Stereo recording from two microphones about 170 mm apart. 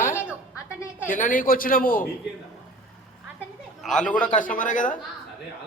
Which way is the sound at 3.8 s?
5° left (ahead or behind).